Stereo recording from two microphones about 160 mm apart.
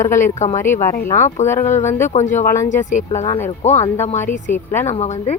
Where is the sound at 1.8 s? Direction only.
15° left (ahead or behind).